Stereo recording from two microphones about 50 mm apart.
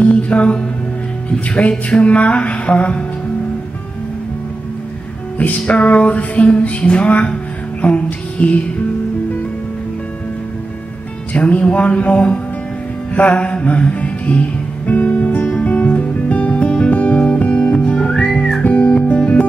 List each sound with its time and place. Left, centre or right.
0.0 s mantra: left
1.3 s music: left
5.4 s music: left
11.3 s music: left
17.9 s whistling: centre
18.6 s music: left